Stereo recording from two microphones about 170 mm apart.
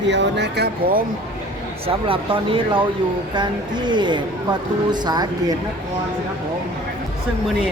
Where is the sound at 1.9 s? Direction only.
30° right (ahead or behind).